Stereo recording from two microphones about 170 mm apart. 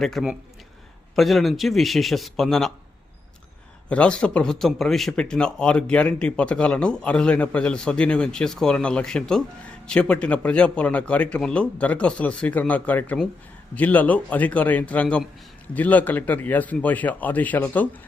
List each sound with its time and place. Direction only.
0.0 s speech: centre (ahead or behind)
3.8 s speech: 5° left (ahead or behind)